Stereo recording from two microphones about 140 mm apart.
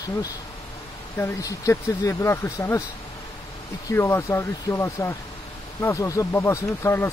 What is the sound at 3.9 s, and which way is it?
Speech, 20° left (ahead or behind).